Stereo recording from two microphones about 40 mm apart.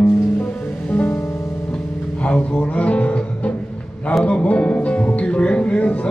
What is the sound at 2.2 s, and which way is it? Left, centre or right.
Speech, left.